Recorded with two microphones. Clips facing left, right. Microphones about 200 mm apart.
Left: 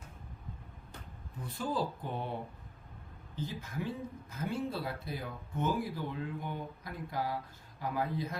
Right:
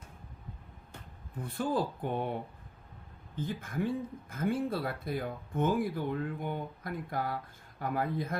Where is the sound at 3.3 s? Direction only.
55° right (ahead or behind).